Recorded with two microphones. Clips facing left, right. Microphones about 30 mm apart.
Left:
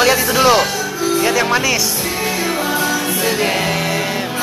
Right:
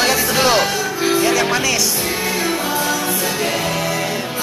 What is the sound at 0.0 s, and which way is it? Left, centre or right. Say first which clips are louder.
Music: left 3 dB; centre.